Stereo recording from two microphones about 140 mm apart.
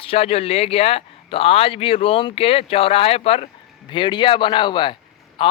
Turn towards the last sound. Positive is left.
turn(degrees=35)  # may be behind; listen again after turning